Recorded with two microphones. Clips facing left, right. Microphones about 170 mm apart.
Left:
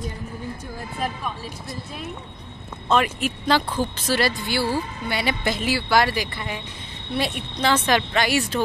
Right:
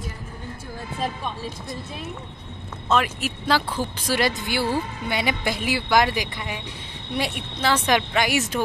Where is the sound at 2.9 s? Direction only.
5° right (ahead or behind).